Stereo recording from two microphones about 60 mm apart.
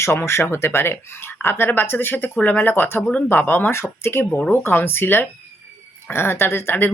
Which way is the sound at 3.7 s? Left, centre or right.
Left.